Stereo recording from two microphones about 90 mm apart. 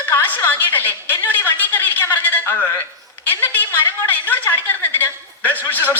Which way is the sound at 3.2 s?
20° left (ahead or behind).